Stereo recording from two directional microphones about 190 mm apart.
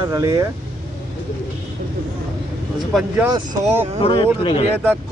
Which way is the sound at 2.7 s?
Centre (ahead or behind).